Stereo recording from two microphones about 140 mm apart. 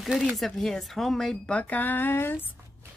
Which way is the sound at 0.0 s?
Centre (ahead or behind).